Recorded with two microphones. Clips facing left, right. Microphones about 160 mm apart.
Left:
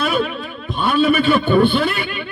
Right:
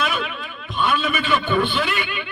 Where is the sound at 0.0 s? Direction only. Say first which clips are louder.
Left 6 dB; 40° left (ahead or behind).